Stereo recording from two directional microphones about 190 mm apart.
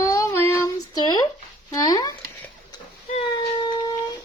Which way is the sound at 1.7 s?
20° left (ahead or behind).